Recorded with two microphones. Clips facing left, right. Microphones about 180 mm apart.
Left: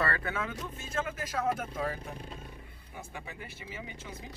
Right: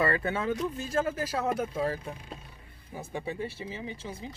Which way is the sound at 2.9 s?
35° right (ahead or behind).